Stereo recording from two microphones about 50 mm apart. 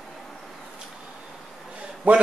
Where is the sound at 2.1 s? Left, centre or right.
Right.